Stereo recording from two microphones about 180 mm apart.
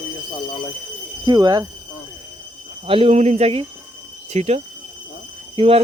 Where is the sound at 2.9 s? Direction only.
35° right (ahead or behind).